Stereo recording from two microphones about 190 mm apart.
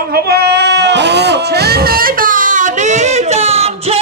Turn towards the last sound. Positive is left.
turn(degrees=-35)  # may be behind; listen again after turning